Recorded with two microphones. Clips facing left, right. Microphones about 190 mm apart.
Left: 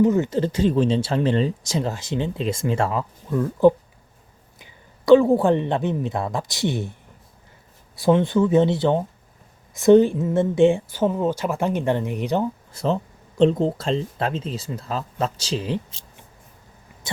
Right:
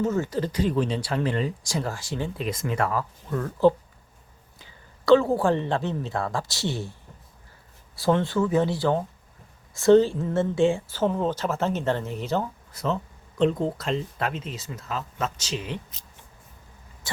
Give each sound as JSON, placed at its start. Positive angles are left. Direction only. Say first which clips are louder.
{"t": 0.0, "sound": "speech", "louder": "left 6 dB", "side_deg": 15}
{"t": 3.3, "sound": "a woman's voice", "louder": "left 4 dB", "side_deg": 15}
{"t": 7.9, "sound": "speech", "louder": "left 5 dB", "side_deg": 15}
{"t": 12.7, "sound": "speech", "louder": "left 2 dB", "side_deg": 30}